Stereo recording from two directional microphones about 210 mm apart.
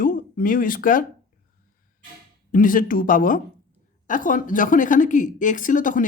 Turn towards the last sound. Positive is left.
turn(degrees=40)  # may be behind; listen again after turning